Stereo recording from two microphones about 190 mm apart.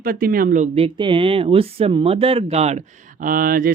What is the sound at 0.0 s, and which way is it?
Speech, 50° right (ahead or behind).